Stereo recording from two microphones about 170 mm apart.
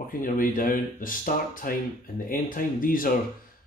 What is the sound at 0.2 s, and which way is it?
Speech, 55° left (ahead or behind).